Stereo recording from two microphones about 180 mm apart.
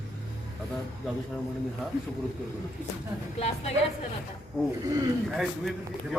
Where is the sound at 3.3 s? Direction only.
35° left (ahead or behind).